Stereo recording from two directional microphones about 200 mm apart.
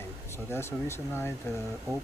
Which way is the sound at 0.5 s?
10° left (ahead or behind).